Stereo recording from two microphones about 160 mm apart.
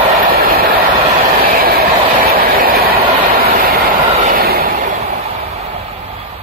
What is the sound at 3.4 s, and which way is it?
Vehicle, 65° right (ahead or behind).